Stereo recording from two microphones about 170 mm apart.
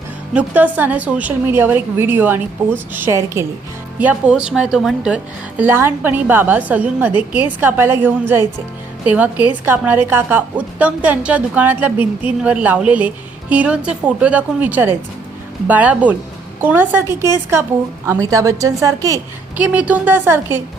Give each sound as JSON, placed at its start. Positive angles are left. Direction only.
{"t": 0.3, "sound": "a woman's voice", "side_deg": -10}
{"t": 19.6, "sound": "a woman's voice", "side_deg": -10}